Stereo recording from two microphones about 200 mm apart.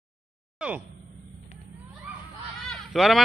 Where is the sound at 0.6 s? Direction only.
5° right (ahead or behind).